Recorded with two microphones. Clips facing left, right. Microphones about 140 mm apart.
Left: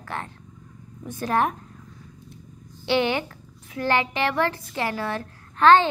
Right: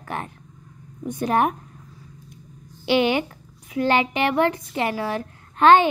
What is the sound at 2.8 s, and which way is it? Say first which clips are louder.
Speech: right 3 dB; 15° right (ahead or behind).